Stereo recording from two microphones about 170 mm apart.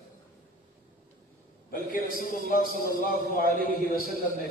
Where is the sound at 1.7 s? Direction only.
55° left (ahead or behind).